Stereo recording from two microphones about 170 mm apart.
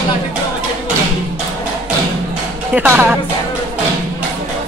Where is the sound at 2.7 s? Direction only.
10° right (ahead or behind).